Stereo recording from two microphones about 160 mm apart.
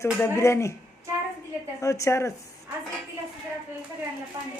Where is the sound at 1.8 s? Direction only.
20° left (ahead or behind).